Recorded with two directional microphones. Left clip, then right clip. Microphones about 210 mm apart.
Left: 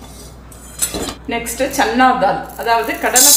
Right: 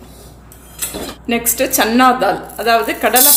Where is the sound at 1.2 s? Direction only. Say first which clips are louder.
Right 4 dB; 50° right (ahead or behind).